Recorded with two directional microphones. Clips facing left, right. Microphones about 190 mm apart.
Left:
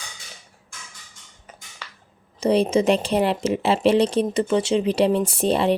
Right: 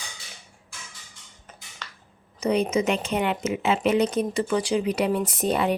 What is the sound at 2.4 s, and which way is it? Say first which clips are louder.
Speech: left 4 dB; 30° left (ahead or behind).